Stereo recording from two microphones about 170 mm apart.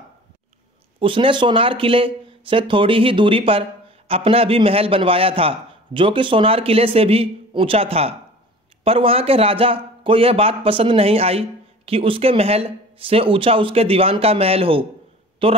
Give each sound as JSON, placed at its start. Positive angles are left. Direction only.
{"t": 0.9, "sound": "speech", "side_deg": -30}